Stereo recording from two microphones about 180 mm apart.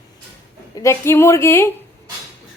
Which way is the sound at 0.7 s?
15° left (ahead or behind).